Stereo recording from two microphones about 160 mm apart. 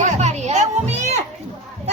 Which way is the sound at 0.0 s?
45° right (ahead or behind).